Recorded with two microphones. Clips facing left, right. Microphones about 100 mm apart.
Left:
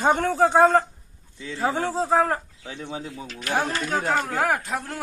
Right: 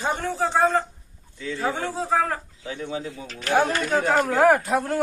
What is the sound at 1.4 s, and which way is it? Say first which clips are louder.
Speech: left 1 dB; 20° left (ahead or behind).